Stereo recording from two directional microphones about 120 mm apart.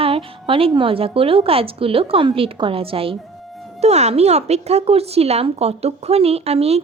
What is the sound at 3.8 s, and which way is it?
Speech, 65° right (ahead or behind).